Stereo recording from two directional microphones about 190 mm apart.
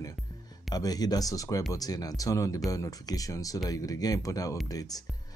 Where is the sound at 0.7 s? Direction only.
20° left (ahead or behind).